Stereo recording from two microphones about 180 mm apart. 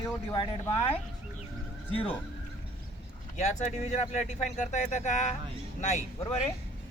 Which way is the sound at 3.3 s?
40° left (ahead or behind).